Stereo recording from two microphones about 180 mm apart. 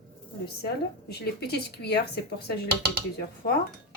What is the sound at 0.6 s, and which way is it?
Speech, 65° left (ahead or behind).